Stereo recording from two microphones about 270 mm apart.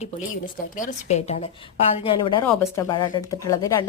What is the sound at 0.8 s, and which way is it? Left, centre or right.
A woman's voice, left.